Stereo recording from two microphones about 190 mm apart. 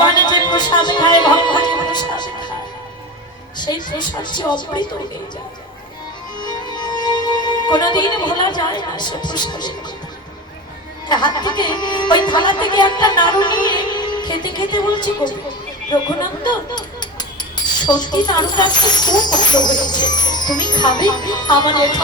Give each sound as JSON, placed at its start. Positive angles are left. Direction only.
{"t": 0.0, "sound": "music", "side_deg": 20}
{"t": 3.6, "sound": "speech", "side_deg": 25}
{"t": 6.4, "sound": "speech", "side_deg": 20}
{"t": 11.1, "sound": "speech", "side_deg": 25}